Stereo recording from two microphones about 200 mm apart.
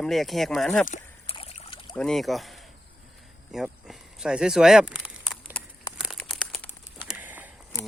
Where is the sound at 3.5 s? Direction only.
Centre (ahead or behind).